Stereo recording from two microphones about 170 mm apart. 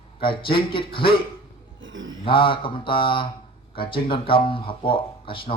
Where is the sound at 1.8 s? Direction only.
90° right.